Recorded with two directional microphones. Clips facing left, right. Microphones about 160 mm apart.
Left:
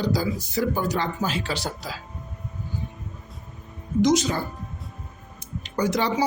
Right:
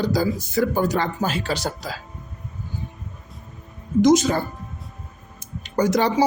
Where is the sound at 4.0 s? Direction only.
50° right (ahead or behind).